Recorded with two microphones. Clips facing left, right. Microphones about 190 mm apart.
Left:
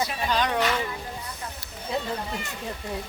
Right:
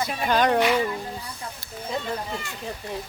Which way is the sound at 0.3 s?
50° right (ahead or behind).